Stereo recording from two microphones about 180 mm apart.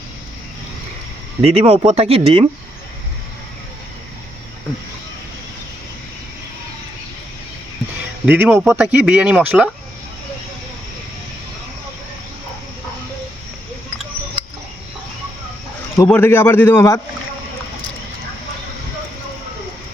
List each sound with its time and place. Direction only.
1.4 s speech: 35° right (ahead or behind)
8.3 s speech: 10° right (ahead or behind)
16.0 s a man's voice: 10° left (ahead or behind)